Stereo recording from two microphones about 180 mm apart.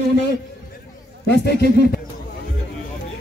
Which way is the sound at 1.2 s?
65° left (ahead or behind).